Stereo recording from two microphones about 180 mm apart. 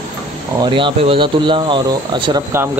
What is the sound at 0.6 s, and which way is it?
Speech, 30° right (ahead or behind).